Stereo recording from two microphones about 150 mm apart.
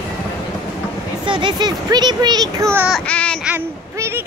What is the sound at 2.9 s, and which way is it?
Speech, 10° left (ahead or behind).